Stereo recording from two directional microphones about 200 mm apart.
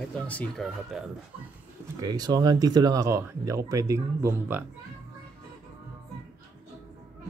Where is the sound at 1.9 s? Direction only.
20° right (ahead or behind).